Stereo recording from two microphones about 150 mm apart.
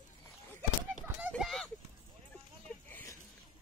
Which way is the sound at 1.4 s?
Centre (ahead or behind).